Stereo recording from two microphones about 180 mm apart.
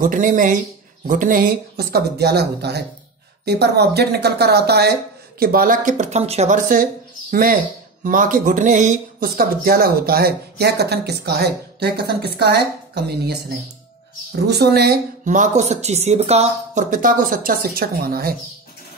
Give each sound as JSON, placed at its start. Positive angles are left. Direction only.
{"t": 0.0, "sound": "speech", "side_deg": -45}
{"t": 5.4, "sound": "speech", "side_deg": -55}
{"t": 15.2, "sound": "speech", "side_deg": -45}